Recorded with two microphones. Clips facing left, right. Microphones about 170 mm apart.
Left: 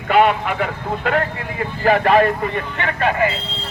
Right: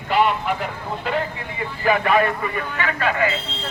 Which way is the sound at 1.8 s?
40° left (ahead or behind).